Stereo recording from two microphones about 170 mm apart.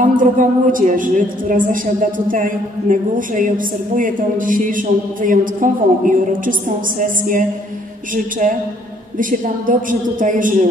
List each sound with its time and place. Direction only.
0.0 s a woman's voice: 50° right (ahead or behind)